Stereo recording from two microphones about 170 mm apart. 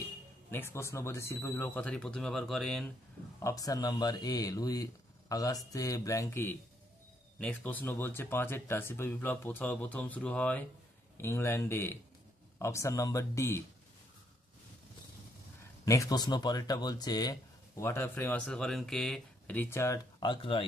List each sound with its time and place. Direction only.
0.5 s speech: 15° left (ahead or behind)
3.3 s speech: 20° left (ahead or behind)
15.8 s speech: 20° left (ahead or behind)